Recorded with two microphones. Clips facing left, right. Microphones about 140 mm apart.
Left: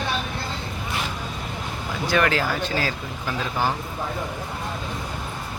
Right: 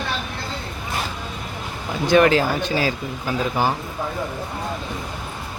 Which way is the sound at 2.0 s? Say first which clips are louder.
Right 6 dB; 20° right (ahead or behind).